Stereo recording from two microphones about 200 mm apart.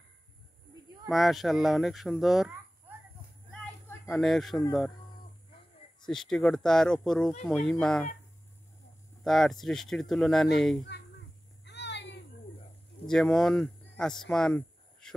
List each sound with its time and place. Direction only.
1.0 s speech: centre (ahead or behind)
4.1 s speech: centre (ahead or behind)
6.0 s speech: centre (ahead or behind)
9.2 s speech: centre (ahead or behind)
11.6 s a sound: 60° left (ahead or behind)
13.0 s speech: 5° left (ahead or behind)